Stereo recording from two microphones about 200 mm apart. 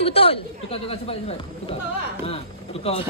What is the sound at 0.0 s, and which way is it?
Speech, 30° left (ahead or behind).